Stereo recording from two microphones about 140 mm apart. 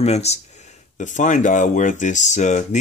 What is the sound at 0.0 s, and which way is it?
Speech, 50° left (ahead or behind).